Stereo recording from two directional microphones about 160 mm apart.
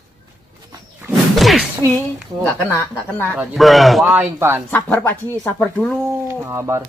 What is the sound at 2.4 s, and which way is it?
Speech, 15° left (ahead or behind).